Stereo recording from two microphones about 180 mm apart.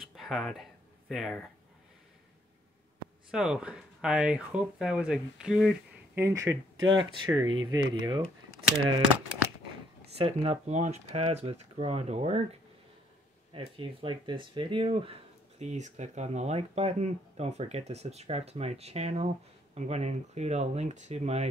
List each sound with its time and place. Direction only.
0.1 s a sound: centre (ahead or behind)
3.3 s speech: 5° right (ahead or behind)
6.2 s speech: 15° right (ahead or behind)
10.1 s speech: 35° right (ahead or behind)
13.5 s speech: 30° right (ahead or behind)
15.6 s speech: 40° right (ahead or behind)